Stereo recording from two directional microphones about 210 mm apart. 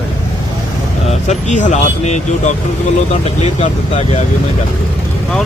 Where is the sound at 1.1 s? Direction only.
35° left (ahead or behind).